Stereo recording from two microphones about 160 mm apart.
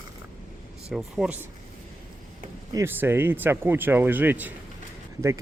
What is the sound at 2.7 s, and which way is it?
Speech, 15° right (ahead or behind).